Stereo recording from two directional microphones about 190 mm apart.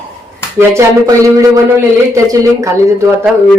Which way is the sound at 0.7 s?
15° right (ahead or behind).